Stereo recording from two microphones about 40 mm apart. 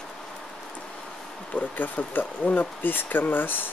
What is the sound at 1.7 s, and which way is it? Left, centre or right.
Speech, left.